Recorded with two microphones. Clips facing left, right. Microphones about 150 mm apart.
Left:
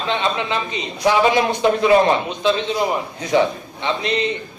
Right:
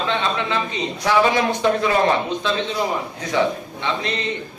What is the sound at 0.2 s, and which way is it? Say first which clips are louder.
A man's voice: left 1 dB; 20° left (ahead or behind).